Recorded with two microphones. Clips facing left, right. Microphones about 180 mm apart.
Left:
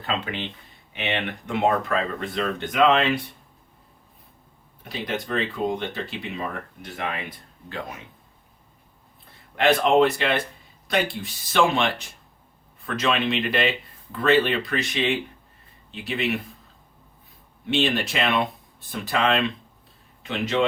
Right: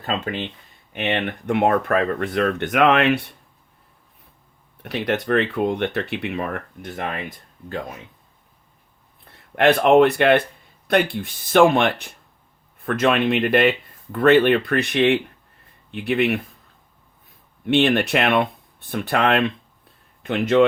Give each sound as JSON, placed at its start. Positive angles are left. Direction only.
{"t": 0.0, "sound": "speech", "side_deg": -45}
{"t": 4.8, "sound": "speech", "side_deg": -65}
{"t": 9.6, "sound": "speech", "side_deg": -55}
{"t": 17.7, "sound": "speech", "side_deg": -60}